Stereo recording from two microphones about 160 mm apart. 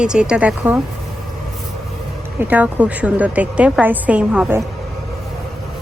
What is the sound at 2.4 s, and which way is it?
A woman's voice, 10° right (ahead or behind).